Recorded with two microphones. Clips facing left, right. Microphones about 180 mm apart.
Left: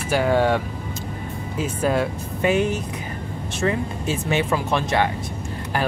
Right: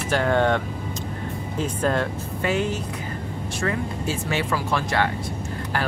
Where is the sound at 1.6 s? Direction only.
10° left (ahead or behind).